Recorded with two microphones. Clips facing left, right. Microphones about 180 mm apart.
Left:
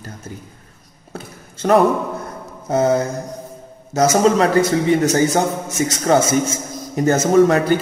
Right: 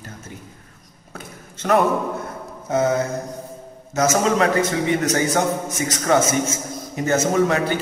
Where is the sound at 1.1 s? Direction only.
30° left (ahead or behind).